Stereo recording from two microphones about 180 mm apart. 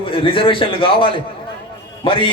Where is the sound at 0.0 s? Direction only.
30° left (ahead or behind).